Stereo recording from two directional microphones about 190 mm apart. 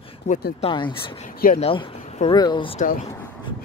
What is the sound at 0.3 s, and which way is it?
Speech, 35° left (ahead or behind).